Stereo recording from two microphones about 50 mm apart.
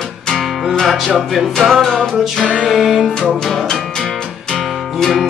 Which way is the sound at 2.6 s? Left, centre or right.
Centre.